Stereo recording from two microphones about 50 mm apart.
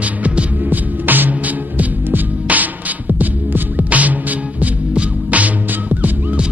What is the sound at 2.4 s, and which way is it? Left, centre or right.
Music, right.